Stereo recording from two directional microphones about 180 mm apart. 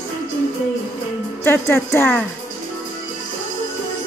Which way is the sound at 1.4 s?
15° left (ahead or behind).